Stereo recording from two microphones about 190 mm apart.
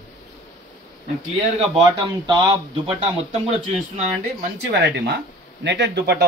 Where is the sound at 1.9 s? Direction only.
25° right (ahead or behind).